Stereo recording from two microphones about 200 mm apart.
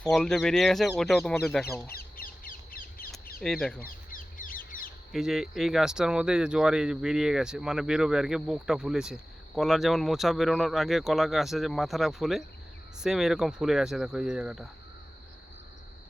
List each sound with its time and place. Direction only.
0.0 s speech: 5° left (ahead or behind)
1.9 s bird: 50° left (ahead or behind)
3.4 s speech: centre (ahead or behind)
3.8 s bird: 45° left (ahead or behind)
5.1 s speech: centre (ahead or behind)